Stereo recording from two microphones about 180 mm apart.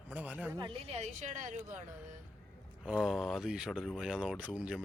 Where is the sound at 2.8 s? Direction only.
5° right (ahead or behind).